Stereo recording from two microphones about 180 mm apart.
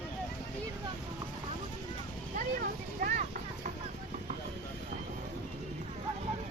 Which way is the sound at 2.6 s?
50° right (ahead or behind).